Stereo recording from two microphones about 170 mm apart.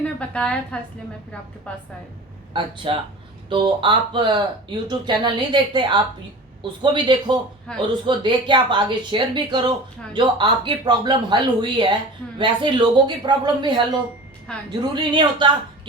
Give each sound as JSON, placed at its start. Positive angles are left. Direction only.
{"t": 0.2, "sound": "a woman's voice", "side_deg": 5}
{"t": 2.5, "sound": "a woman's voice", "side_deg": -30}
{"t": 14.8, "sound": "a woman's voice", "side_deg": -25}